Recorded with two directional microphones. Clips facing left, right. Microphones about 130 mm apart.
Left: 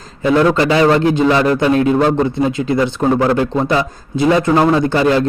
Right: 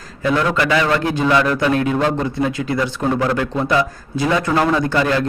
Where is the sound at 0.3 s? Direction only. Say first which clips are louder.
Left 6 dB; 30° left (ahead or behind).